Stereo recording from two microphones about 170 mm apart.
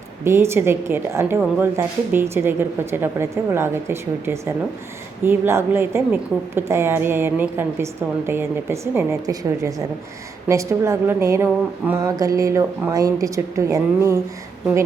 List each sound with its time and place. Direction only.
0.3 s a woman's voice: 15° right (ahead or behind)